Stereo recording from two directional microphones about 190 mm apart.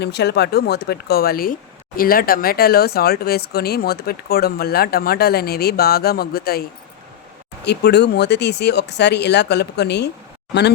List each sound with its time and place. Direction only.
0.0 s speech: 60° left (ahead or behind)